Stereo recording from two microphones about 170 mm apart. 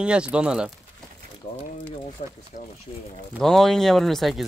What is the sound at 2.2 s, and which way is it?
Speech, 45° left (ahead or behind).